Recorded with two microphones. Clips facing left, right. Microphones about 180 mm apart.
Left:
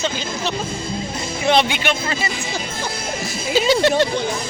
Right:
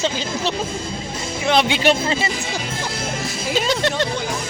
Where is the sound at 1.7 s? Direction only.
30° right (ahead or behind).